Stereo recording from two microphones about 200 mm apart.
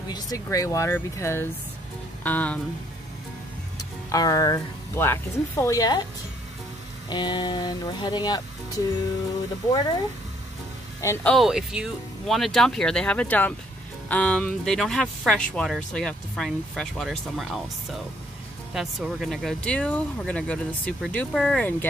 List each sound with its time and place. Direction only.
0.1 s speech: 15° left (ahead or behind)
4.1 s speech: 20° left (ahead or behind)
7.1 s a sound: 20° left (ahead or behind)
9.7 s a sound: 20° left (ahead or behind)
11.0 s speech: 15° left (ahead or behind)
11.3 s speech: centre (ahead or behind)